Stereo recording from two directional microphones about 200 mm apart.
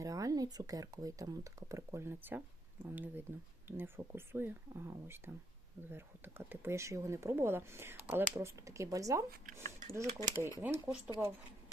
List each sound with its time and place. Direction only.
0.0 s speech: 15° right (ahead or behind)